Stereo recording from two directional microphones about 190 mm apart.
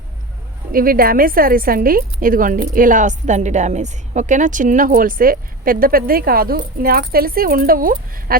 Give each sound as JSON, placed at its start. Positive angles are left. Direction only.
{"t": 0.7, "sound": "speech", "side_deg": -50}